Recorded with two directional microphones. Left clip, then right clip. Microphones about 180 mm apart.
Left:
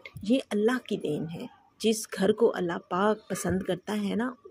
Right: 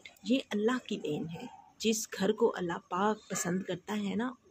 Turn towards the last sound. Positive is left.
turn(degrees=30)  # may be behind; listen again after turning